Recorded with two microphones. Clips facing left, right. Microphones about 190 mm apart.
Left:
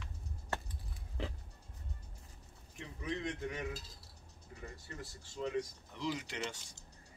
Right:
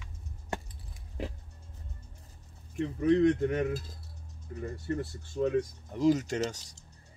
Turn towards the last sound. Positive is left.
turn(degrees=-40)  # may be behind; listen again after turning